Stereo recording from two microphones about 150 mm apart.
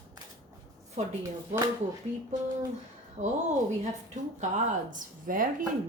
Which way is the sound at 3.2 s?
40° right (ahead or behind).